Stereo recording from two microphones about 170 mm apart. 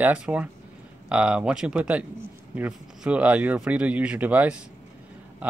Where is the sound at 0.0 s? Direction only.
5° right (ahead or behind).